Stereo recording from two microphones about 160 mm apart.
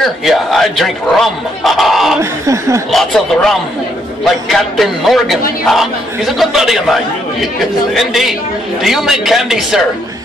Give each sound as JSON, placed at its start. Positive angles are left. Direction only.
{"t": 0.0, "sound": "a man's voice", "side_deg": 0}
{"t": 2.4, "sound": "speech", "side_deg": -20}
{"t": 2.9, "sound": "a man's voice", "side_deg": 0}